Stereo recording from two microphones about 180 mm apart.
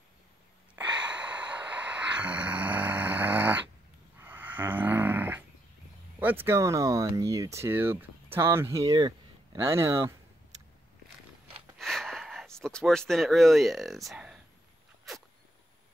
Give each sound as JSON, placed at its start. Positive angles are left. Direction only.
{"t": 0.7, "sound": "gasp", "side_deg": -10}
{"t": 4.2, "sound": "snoring", "side_deg": -10}
{"t": 6.1, "sound": "speech", "side_deg": -10}
{"t": 11.8, "sound": "a sound", "side_deg": 0}